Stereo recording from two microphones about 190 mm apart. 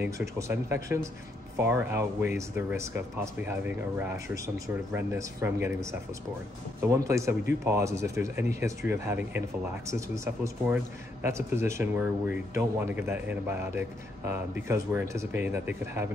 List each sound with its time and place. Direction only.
0.0 s speech: 15° right (ahead or behind)